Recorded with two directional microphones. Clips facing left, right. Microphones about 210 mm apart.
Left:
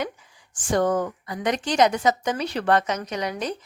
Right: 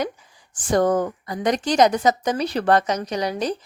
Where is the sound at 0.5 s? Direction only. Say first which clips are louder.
Right 3 dB; 35° right (ahead or behind).